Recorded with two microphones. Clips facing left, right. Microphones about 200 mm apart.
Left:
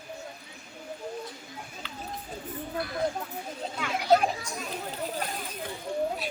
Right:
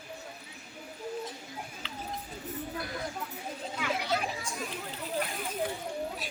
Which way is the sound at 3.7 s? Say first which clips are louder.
Left 8 dB; 45° left (ahead or behind).